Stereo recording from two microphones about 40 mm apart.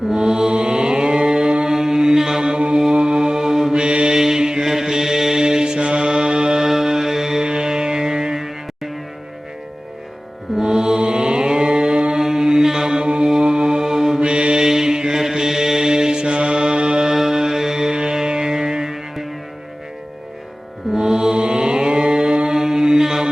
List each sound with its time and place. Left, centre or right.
0.1 s mantra: centre
6.7 s music: centre
10.6 s mantra: centre
14.2 s mantra: right
14.6 s mantra: centre
17.1 s music: centre
20.9 s mantra: centre